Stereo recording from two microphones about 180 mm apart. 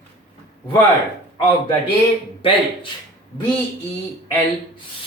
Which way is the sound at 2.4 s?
30° left (ahead or behind).